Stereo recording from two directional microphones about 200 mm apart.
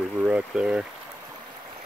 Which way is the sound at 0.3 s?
5° right (ahead or behind).